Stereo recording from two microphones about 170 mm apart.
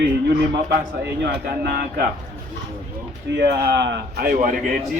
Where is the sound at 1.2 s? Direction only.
70° right (ahead or behind).